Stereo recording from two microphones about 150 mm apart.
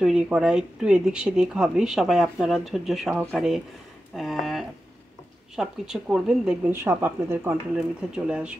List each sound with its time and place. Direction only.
0.0 s speech: 5° right (ahead or behind)
6.7 s speech: 15° right (ahead or behind)